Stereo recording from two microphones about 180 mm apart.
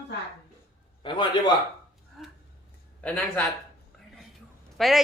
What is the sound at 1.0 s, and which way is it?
Speech, 25° left (ahead or behind).